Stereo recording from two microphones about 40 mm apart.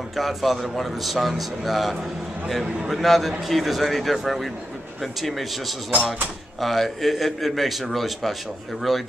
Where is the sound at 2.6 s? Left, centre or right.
Centre.